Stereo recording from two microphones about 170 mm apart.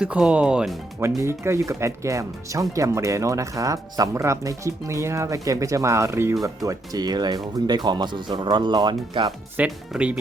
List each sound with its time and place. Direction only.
0.0 s speech: 5° right (ahead or behind)
0.9 s speech: 15° right (ahead or behind)
9.6 s speech: 5° right (ahead or behind)